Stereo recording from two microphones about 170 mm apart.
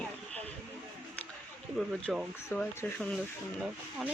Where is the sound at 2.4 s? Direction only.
15° left (ahead or behind).